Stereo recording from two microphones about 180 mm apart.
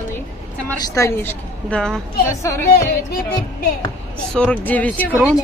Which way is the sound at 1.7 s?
5° left (ahead or behind).